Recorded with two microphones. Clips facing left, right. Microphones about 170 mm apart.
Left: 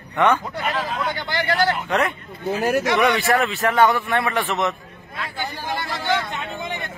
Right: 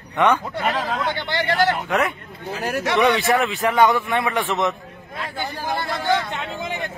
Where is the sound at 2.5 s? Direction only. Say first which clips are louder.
Left 5 dB; 45° left (ahead or behind).